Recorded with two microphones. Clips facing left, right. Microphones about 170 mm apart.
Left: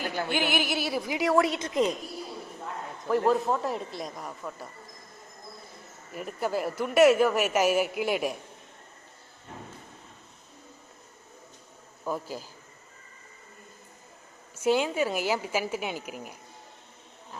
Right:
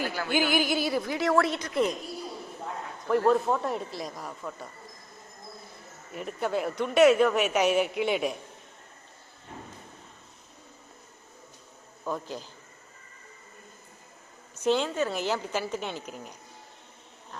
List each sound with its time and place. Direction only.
0.3 s a woman's voice: centre (ahead or behind)
3.1 s a woman's voice: centre (ahead or behind)
6.1 s a woman's voice: 5° left (ahead or behind)
12.0 s a woman's voice: 10° left (ahead or behind)
14.6 s a woman's voice: 10° left (ahead or behind)